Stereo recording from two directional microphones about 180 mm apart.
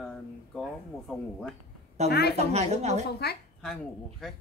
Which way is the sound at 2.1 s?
65° left (ahead or behind).